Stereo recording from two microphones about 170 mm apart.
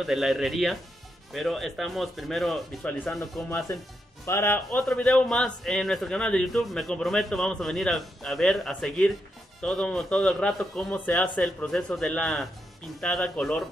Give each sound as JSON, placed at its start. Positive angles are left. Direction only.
{"t": 0.0, "sound": "a man's voice", "side_deg": 0}
{"t": 3.4, "sound": "speech", "side_deg": 15}
{"t": 4.6, "sound": "a man's voice", "side_deg": 5}